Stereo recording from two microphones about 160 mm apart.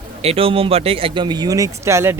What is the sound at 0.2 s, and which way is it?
A man's voice, 35° right (ahead or behind).